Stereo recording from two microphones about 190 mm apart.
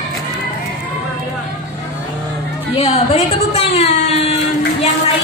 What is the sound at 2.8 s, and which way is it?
Speech, 30° left (ahead or behind).